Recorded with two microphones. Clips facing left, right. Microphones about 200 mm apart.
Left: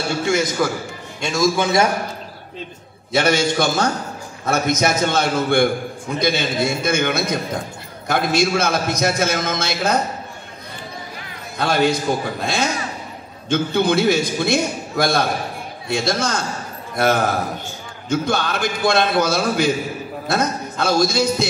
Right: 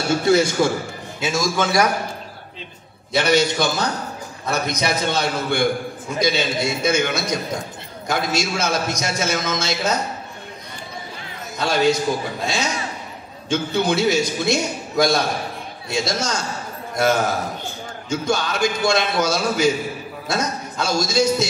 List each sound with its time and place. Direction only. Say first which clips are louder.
0.1 s a man's voice: right 5 dB; 35° right (ahead or behind)
1.2 s a man's voice: left 4 dB; centre (ahead or behind)
1.6 s a man's voice: right 1 dB; 25° left (ahead or behind)
3.1 s a man's voice: even; 50° left (ahead or behind)
11.5 s a man's voice: even; 55° left (ahead or behind)